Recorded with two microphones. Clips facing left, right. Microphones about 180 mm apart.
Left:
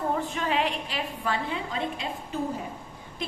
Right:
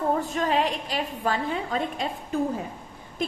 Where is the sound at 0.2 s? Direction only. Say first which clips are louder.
Right 3 dB; 40° right (ahead or behind).